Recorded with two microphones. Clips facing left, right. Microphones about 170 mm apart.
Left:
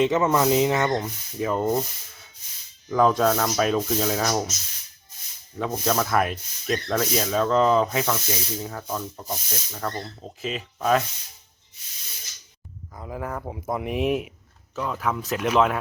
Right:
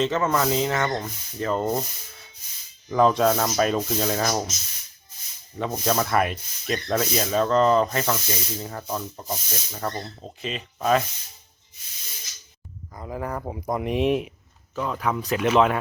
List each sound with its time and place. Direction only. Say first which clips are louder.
0.0 s speech: left 2 dB; 15° left (ahead or behind)
0.9 s speech: left 3 dB; 5° left (ahead or behind)
2.9 s speech: right 1 dB; centre (ahead or behind)
5.5 s speech: even; centre (ahead or behind)
13.0 s speech: right 1 dB; centre (ahead or behind)